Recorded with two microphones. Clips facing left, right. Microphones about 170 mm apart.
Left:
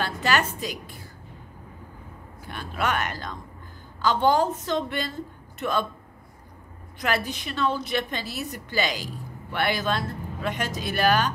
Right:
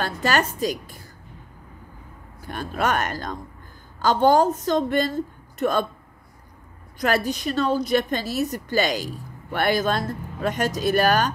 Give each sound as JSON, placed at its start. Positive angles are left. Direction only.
{"t": 0.0, "sound": "a woman's voice", "side_deg": -40}
{"t": 2.4, "sound": "a woman's voice", "side_deg": -45}
{"t": 7.0, "sound": "a woman's voice", "side_deg": -40}